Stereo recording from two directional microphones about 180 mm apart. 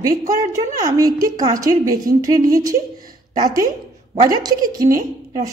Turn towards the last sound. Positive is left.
turn(degrees=-20)  # may be behind; listen again after turning